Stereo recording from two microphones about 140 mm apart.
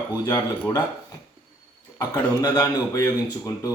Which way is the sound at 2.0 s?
25° left (ahead or behind).